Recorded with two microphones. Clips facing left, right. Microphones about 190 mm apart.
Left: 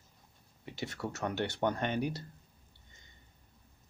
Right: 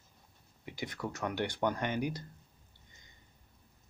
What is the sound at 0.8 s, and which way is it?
Speech, 25° left (ahead or behind).